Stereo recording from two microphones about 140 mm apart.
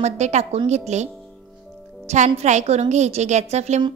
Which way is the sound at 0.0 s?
55° right (ahead or behind).